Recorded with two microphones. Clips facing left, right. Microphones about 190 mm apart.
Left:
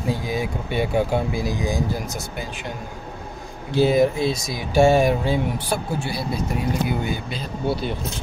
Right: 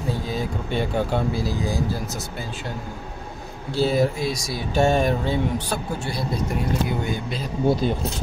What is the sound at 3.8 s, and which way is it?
Speech, 15° left (ahead or behind).